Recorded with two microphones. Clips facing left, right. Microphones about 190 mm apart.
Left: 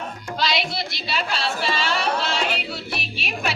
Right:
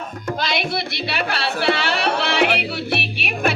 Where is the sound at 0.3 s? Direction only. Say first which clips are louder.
Right 2 dB; 55° right (ahead or behind).